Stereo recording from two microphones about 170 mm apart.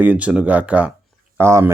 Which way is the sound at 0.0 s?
10° right (ahead or behind).